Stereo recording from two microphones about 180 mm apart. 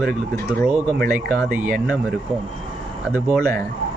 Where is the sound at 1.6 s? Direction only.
5° right (ahead or behind).